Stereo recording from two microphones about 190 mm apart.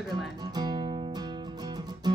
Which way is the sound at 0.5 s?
20° right (ahead or behind).